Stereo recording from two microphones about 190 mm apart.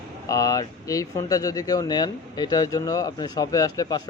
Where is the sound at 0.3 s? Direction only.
20° left (ahead or behind).